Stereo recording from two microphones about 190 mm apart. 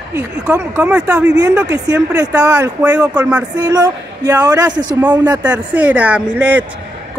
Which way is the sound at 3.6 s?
20° right (ahead or behind).